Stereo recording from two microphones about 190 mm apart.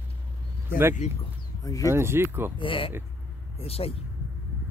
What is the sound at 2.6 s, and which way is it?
Speech, 25° left (ahead or behind).